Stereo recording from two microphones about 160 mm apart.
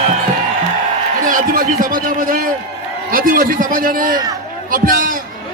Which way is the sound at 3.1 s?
60° right (ahead or behind).